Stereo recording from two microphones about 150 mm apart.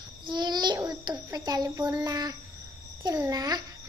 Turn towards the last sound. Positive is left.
turn(degrees=-25)  # may be behind; listen again after turning